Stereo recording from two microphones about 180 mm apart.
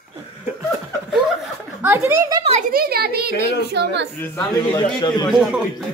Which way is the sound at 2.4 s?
40° right (ahead or behind).